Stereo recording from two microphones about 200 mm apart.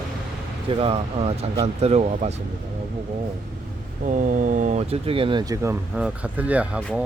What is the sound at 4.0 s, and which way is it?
Speech, 40° right (ahead or behind).